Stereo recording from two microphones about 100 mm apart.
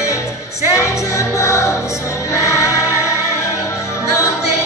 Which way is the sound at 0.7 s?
30° left (ahead or behind).